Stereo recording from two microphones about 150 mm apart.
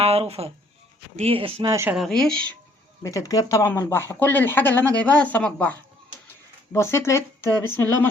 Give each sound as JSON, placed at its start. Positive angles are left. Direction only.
{"t": 0.0, "sound": "speech", "side_deg": -40}
{"t": 1.6, "sound": "speech", "side_deg": -20}
{"t": 1.9, "sound": "speech", "side_deg": 0}
{"t": 3.0, "sound": "speech", "side_deg": 20}
{"t": 6.7, "sound": "speech", "side_deg": 15}